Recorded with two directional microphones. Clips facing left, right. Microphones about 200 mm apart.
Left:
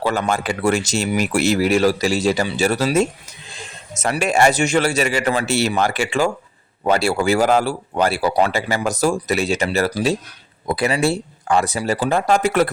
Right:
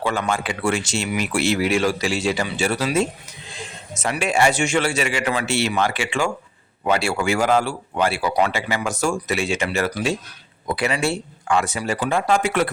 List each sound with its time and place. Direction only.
0.0 s a man's voice: 40° left (ahead or behind)